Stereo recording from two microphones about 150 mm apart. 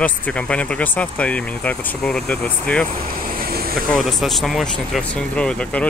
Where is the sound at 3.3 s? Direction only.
80° right.